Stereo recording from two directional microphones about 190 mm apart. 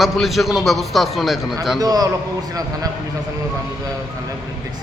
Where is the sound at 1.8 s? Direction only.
20° right (ahead or behind).